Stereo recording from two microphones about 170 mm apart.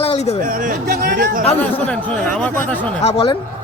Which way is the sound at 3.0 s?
35° left (ahead or behind).